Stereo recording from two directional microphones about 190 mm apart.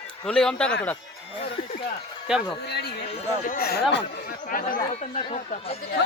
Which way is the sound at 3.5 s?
55° left (ahead or behind).